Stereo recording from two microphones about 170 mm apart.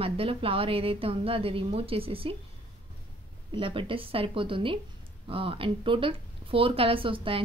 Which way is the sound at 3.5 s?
30° right (ahead or behind).